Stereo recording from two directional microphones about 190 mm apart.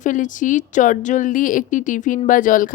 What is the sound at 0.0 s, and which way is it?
A woman's voice, 45° left (ahead or behind).